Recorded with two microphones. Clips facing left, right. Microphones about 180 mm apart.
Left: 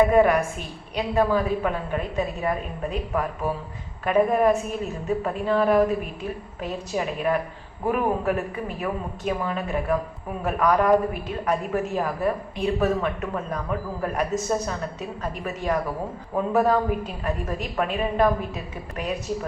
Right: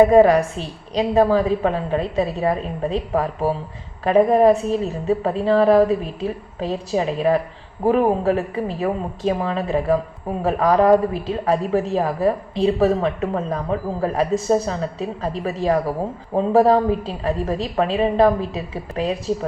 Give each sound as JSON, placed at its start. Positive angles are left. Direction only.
{"t": 0.0, "sound": "a woman's voice", "side_deg": -35}